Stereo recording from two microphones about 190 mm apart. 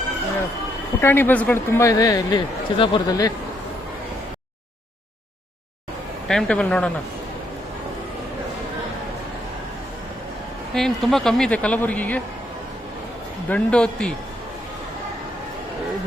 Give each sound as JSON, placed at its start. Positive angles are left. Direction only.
{"t": 1.0, "sound": "speech", "side_deg": 10}
{"t": 6.2, "sound": "speech", "side_deg": 5}
{"t": 10.8, "sound": "speech", "side_deg": 0}
{"t": 13.5, "sound": "speech", "side_deg": 5}